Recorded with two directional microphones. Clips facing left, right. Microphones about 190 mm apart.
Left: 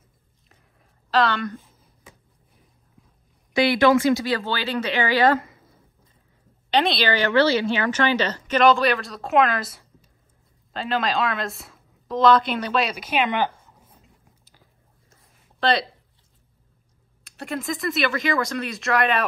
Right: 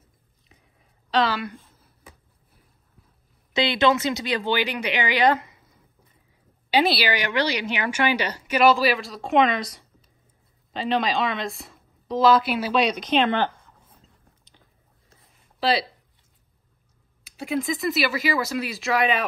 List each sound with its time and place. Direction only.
0.5 s a sound: centre (ahead or behind)
3.5 s speech: 20° right (ahead or behind)
6.7 s a woman's voice: 5° right (ahead or behind)
15.6 s speech: 5° right (ahead or behind)
17.2 s speech: centre (ahead or behind)